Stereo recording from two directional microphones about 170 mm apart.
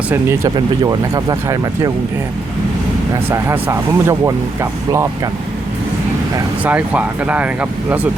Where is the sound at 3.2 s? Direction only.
15° right (ahead or behind).